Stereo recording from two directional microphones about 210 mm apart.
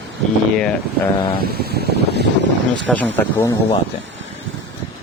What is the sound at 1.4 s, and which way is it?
Speech, 45° right (ahead or behind).